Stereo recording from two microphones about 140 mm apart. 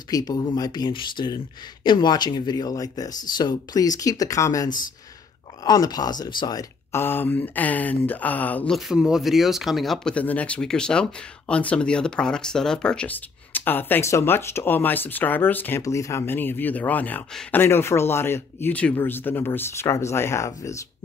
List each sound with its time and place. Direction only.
0.1 s speech: 25° left (ahead or behind)
7.0 s speech: 15° left (ahead or behind)
8.7 s speech: 5° right (ahead or behind); by 20.8 s 20° left (ahead or behind)